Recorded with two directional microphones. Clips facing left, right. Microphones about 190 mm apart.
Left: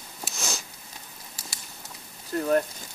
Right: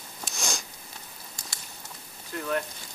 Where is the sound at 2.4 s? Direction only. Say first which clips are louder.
Left 7 dB; 40° left (ahead or behind).